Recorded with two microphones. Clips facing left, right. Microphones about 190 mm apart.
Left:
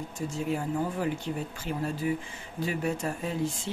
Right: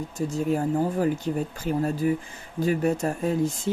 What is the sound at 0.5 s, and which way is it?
Speech, 40° right (ahead or behind).